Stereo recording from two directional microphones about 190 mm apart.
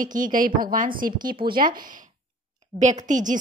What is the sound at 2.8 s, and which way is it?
Speech, 40° right (ahead or behind).